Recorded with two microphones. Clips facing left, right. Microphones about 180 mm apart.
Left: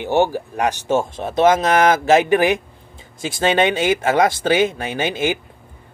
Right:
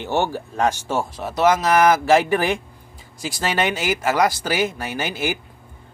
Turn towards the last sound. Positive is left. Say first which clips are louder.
# left 4 dB
turn(degrees=20)  # may be behind; listen again after turning